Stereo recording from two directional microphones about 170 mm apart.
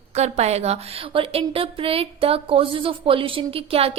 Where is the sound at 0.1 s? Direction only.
40° right (ahead or behind).